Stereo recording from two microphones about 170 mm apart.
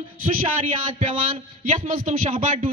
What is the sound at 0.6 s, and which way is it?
A man's voice, 40° right (ahead or behind).